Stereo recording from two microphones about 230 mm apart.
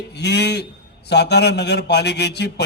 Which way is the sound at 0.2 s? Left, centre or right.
Left.